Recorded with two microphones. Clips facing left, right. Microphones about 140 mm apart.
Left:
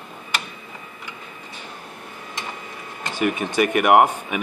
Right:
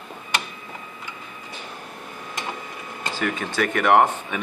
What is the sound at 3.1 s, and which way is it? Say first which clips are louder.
A man's voice: left 4 dB; 15° left (ahead or behind).